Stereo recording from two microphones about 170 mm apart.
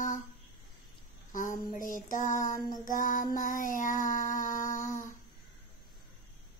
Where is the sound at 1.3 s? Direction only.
50° left (ahead or behind).